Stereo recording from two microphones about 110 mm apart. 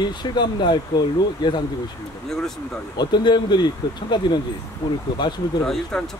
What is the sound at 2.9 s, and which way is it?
Speech, 40° left (ahead or behind).